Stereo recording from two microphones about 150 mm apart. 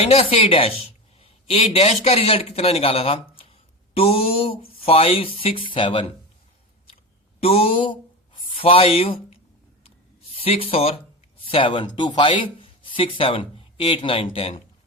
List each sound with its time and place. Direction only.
0.0 s a man's voice: 40° left (ahead or behind)
6.9 s a sound: 40° left (ahead or behind)
10.3 s speech: 40° left (ahead or behind)